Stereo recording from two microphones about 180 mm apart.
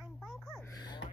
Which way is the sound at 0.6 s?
20° left (ahead or behind).